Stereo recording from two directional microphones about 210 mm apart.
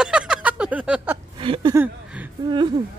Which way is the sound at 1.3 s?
25° right (ahead or behind).